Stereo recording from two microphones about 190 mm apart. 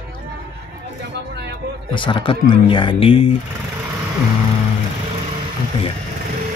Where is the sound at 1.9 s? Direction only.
25° left (ahead or behind).